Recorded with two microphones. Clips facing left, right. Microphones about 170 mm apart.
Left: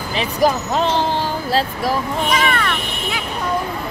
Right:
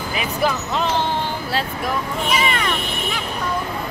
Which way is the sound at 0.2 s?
35° left (ahead or behind).